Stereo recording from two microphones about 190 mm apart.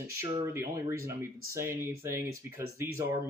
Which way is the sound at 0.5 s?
15° right (ahead or behind).